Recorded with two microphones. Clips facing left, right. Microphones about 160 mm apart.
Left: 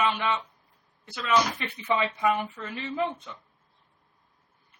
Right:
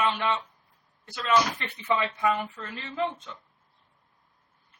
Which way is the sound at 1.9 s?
15° left (ahead or behind).